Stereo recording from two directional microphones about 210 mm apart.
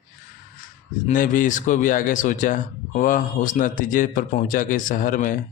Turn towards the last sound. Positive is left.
turn(degrees=40)  # may be behind; listen again after turning